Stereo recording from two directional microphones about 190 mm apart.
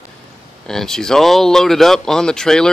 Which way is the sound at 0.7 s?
Centre (ahead or behind).